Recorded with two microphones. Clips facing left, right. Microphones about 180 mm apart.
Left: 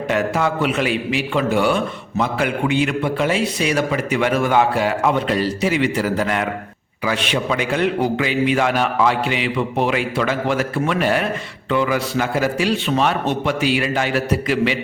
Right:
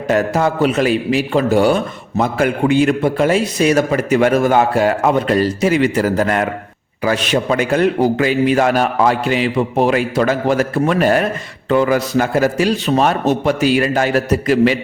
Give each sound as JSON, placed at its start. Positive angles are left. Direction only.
{"t": 0.1, "sound": "a man's voice", "side_deg": -40}